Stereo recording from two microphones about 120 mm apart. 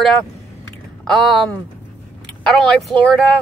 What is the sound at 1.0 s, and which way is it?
Speech, centre (ahead or behind).